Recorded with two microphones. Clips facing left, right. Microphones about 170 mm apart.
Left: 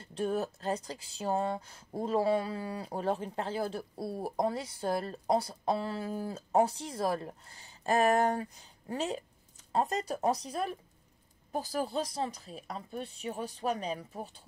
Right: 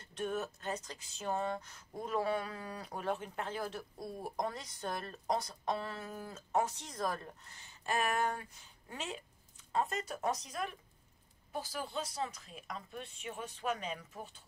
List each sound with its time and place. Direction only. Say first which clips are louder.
0.0 s speech: left 6 dB; 30° left (ahead or behind)